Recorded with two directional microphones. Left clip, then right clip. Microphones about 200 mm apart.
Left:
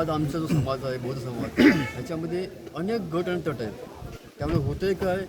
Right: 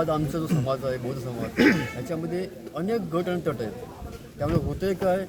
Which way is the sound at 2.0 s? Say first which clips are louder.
Even; 10° right (ahead or behind).